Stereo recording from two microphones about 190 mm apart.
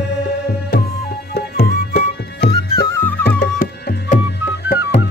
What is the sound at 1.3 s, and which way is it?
Music, 60° left (ahead or behind).